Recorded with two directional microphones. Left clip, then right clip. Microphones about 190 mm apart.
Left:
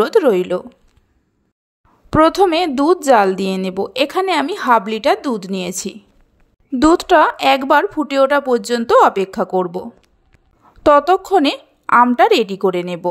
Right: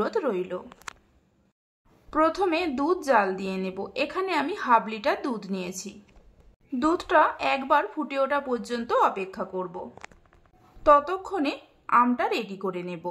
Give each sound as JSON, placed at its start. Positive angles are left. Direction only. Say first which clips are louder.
{"t": 0.0, "sound": "a woman's voice", "louder": "left 14 dB", "side_deg": 40}
{"t": 2.0, "sound": "a woman's voice", "louder": "left 11 dB", "side_deg": 40}